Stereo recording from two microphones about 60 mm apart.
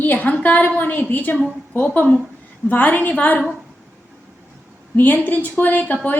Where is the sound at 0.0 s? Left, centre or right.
Left.